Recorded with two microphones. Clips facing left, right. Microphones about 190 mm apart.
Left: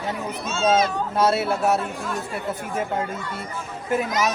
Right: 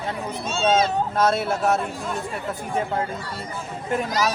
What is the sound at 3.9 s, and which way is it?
Speech, 5° left (ahead or behind).